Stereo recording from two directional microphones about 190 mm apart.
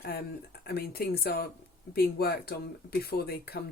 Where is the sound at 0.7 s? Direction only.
55° left (ahead or behind).